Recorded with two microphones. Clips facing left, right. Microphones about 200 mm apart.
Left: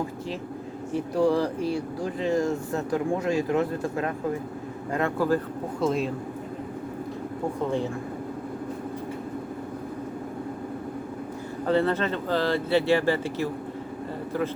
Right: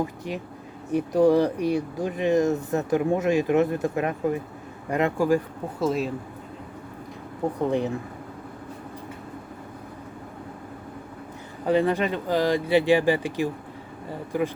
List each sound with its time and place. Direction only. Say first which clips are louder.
0.9 s speech: right 4 dB; 20° right (ahead or behind)
5.8 s speech: right 1 dB; 5° right (ahead or behind)
7.7 s speech: right 3 dB; 15° right (ahead or behind)
11.6 s speech: right 2 dB; 15° right (ahead or behind)